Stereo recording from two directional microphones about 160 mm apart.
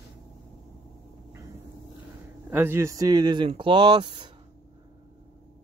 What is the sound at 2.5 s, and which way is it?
Speech, 15° right (ahead or behind).